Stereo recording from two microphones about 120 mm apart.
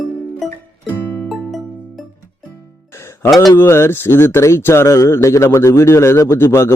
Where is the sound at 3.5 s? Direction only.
20° left (ahead or behind).